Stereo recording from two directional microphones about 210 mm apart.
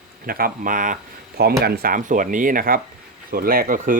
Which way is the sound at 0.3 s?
45° right (ahead or behind).